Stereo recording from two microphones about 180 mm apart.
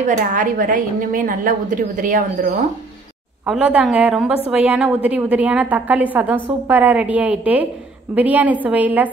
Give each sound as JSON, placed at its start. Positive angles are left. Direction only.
{"t": 0.0, "sound": "a woman's voice", "side_deg": -45}
{"t": 3.4, "sound": "a woman's voice", "side_deg": -5}